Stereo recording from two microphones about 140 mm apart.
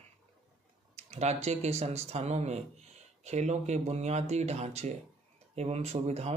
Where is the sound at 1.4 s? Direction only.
50° right (ahead or behind).